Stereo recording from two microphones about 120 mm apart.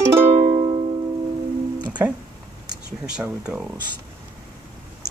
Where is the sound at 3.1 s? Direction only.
5° right (ahead or behind).